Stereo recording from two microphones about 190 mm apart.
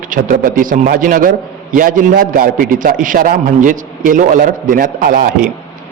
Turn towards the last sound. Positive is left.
turn(degrees=-45)  # may be behind; listen again after turning